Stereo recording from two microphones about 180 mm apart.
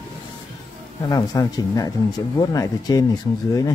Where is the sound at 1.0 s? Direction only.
20° left (ahead or behind).